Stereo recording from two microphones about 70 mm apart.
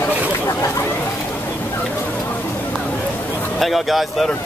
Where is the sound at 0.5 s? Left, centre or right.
Left.